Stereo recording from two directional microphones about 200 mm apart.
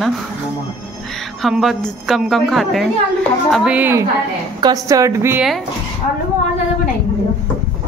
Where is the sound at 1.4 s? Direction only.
Centre (ahead or behind).